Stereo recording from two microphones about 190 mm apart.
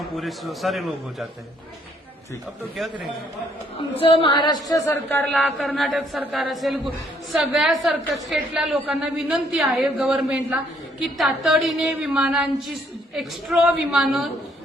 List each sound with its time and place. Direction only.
0.2 s a woman's voice: centre (ahead or behind)
4.0 s speech: 25° left (ahead or behind)
5.0 s a woman's voice: 5° left (ahead or behind)